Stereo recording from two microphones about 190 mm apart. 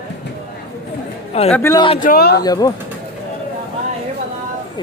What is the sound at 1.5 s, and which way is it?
Speech, 15° left (ahead or behind).